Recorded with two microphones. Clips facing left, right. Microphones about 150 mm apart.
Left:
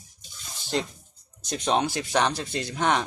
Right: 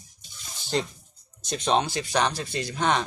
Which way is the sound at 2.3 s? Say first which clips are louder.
Even; 10° right (ahead or behind).